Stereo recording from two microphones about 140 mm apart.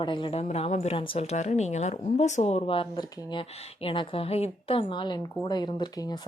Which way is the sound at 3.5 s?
45° left (ahead or behind).